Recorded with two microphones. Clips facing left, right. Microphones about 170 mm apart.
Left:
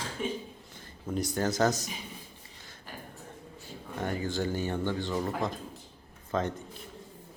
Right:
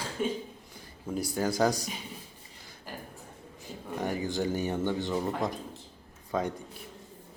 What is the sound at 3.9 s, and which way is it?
A man's voice, 15° right (ahead or behind).